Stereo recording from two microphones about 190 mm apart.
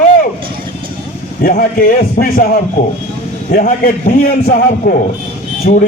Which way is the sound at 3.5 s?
45° left (ahead or behind).